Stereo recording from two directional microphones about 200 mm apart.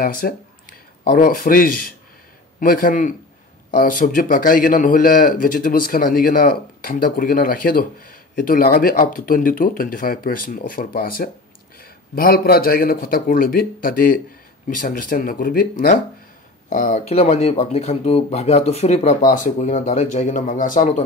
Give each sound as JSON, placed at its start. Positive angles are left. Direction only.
{"t": 0.2, "sound": "speech", "side_deg": 50}